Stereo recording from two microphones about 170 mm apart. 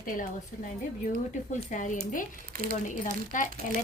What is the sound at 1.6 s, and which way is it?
Speech, 45° left (ahead or behind).